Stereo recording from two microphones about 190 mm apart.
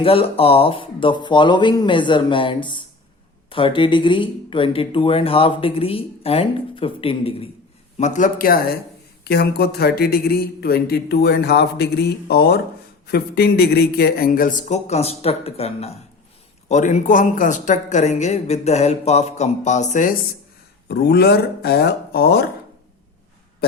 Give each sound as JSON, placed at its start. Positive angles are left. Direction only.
{"t": 0.0, "sound": "a man's voice", "side_deg": 30}
{"t": 20.8, "sound": "a man's voice", "side_deg": 60}